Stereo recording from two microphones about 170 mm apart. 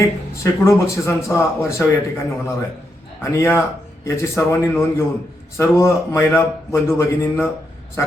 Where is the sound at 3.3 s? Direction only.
15° left (ahead or behind).